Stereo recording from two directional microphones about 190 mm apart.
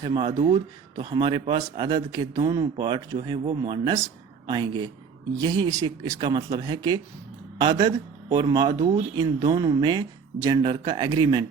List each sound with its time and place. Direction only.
0.0 s speech: 25° right (ahead or behind)